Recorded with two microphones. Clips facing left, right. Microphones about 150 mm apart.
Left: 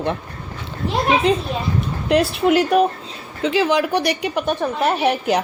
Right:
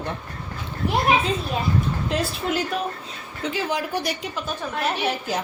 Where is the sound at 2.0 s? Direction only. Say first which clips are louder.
Left 9 dB; 70° left (ahead or behind).